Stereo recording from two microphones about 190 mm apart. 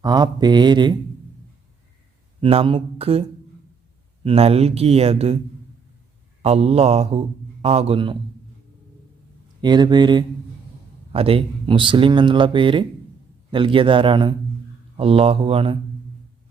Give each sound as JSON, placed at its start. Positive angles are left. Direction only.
{"t": 0.0, "sound": "speech", "side_deg": -20}
{"t": 2.4, "sound": "speech", "side_deg": -30}
{"t": 6.4, "sound": "speech", "side_deg": -30}
{"t": 9.6, "sound": "speech", "side_deg": -20}